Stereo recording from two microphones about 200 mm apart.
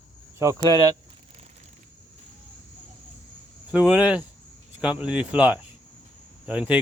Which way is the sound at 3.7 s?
5° right (ahead or behind).